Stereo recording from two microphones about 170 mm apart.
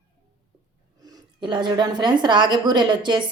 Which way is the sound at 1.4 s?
25° right (ahead or behind).